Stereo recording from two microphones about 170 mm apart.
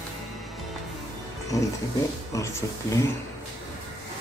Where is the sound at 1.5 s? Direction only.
20° left (ahead or behind).